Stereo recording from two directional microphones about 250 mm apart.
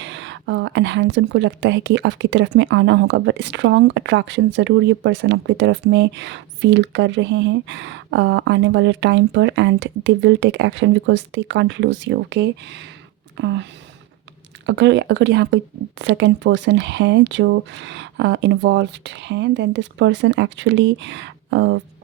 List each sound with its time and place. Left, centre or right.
0.0 s a woman's voice: right
14.7 s a woman's voice: right